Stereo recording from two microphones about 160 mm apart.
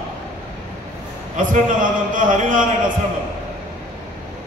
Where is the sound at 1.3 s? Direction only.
55° right (ahead or behind).